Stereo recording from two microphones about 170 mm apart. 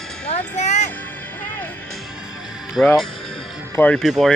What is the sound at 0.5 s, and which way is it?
Music, 45° left (ahead or behind).